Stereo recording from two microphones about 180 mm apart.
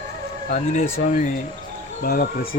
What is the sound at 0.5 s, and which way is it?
Speech, 40° left (ahead or behind).